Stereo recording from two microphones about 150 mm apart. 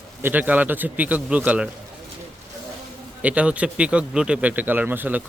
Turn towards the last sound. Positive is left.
turn(degrees=-15)  # may be behind; listen again after turning